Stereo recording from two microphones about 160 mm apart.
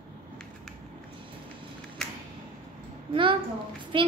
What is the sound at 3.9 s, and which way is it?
Speech, 30° right (ahead or behind).